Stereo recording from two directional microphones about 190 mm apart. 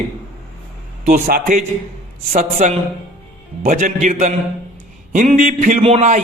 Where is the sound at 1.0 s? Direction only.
40° right (ahead or behind).